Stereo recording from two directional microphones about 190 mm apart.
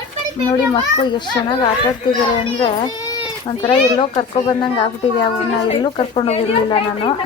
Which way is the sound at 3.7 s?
25° left (ahead or behind).